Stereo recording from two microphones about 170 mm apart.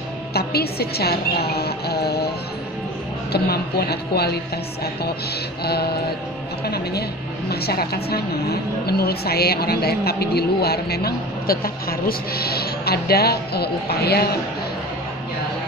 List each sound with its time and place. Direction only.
0.3 s a woman's voice: 70° left (ahead or behind)
3.3 s a woman's voice: 70° left (ahead or behind)
5.6 s a woman's voice: 70° left (ahead or behind)